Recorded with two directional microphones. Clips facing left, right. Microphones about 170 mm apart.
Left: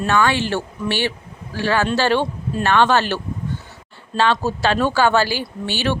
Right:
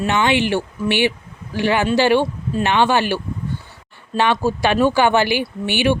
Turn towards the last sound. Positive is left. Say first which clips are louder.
# right 4 dB
turn(degrees=-15)  # may be behind; listen again after turning